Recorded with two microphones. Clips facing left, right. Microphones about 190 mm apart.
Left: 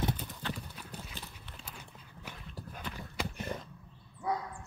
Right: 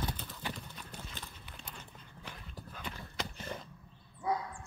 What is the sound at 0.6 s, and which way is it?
Clip-clop, 5° left (ahead or behind).